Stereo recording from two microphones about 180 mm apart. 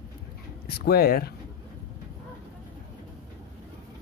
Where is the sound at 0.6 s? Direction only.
60° left (ahead or behind).